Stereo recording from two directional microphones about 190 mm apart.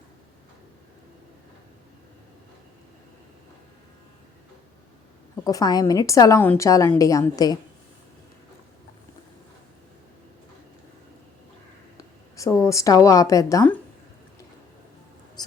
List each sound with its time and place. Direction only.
5.5 s a woman's voice: 20° left (ahead or behind)
11.9 s a woman's voice: 15° left (ahead or behind)
15.4 s a sound: 20° left (ahead or behind)